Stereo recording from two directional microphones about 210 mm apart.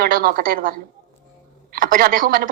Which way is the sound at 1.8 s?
40° right (ahead or behind).